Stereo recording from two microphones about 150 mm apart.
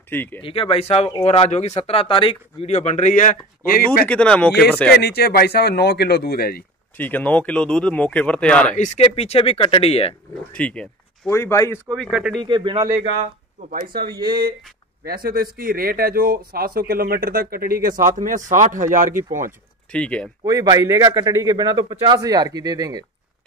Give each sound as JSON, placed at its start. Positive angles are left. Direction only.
{"t": 0.1, "sound": "speech", "side_deg": 15}
{"t": 0.4, "sound": "speech", "side_deg": 40}
{"t": 4.1, "sound": "speech", "side_deg": 10}
{"t": 4.9, "sound": "speech", "side_deg": 90}
{"t": 7.0, "sound": "speech", "side_deg": 10}
{"t": 8.7, "sound": "speech", "side_deg": 50}
{"t": 10.5, "sound": "speech", "side_deg": 10}
{"t": 11.9, "sound": "speech", "side_deg": 0}
{"t": 12.4, "sound": "a man's voice", "side_deg": -30}
{"t": 13.6, "sound": "speech", "side_deg": -55}
{"t": 14.2, "sound": "speech", "side_deg": -90}
{"t": 19.9, "sound": "speech", "side_deg": 5}
{"t": 20.4, "sound": "speech", "side_deg": -25}